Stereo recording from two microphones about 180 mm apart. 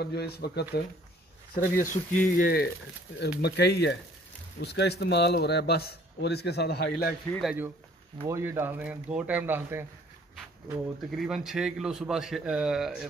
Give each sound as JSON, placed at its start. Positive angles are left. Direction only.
{"t": 0.0, "sound": "speech", "side_deg": 65}
{"t": 1.5, "sound": "speech", "side_deg": 50}
{"t": 3.2, "sound": "speech", "side_deg": 65}
{"t": 8.2, "sound": "speech", "side_deg": -15}
{"t": 10.3, "sound": "speech", "side_deg": 0}